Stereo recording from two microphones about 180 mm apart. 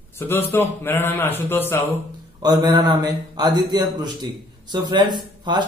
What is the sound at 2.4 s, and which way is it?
A man's voice, 20° right (ahead or behind).